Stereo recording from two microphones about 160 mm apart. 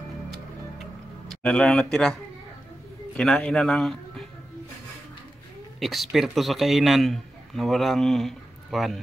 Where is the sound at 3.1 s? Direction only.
5° left (ahead or behind).